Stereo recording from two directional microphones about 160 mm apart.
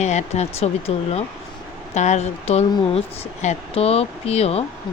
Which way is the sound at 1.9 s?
45° left (ahead or behind).